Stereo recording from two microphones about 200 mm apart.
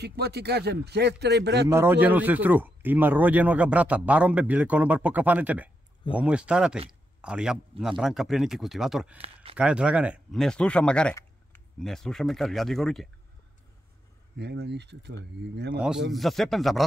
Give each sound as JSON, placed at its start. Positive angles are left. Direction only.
{"t": 0.0, "sound": "speech", "side_deg": -55}
{"t": 1.7, "sound": "a man's voice", "side_deg": -10}
{"t": 6.9, "sound": "a sound", "side_deg": -5}
{"t": 8.0, "sound": "speech", "side_deg": 0}
{"t": 9.2, "sound": "a sound", "side_deg": -30}
{"t": 9.6, "sound": "speech", "side_deg": -5}
{"t": 14.3, "sound": "speech", "side_deg": -55}
{"t": 16.1, "sound": "speech", "side_deg": 0}